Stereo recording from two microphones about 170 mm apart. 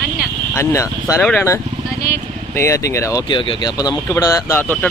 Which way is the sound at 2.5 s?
15° left (ahead or behind).